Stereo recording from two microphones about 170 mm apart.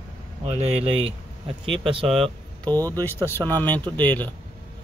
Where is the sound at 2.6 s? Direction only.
10° left (ahead or behind).